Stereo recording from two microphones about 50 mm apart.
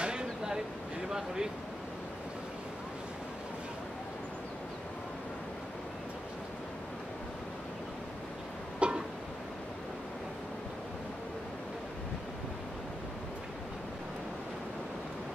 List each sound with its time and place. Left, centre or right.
0.0 s a sound: centre
1.0 s speech: centre
8.7 s music: centre